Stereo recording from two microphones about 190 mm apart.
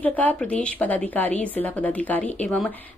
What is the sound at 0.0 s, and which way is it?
Speech, 10° left (ahead or behind).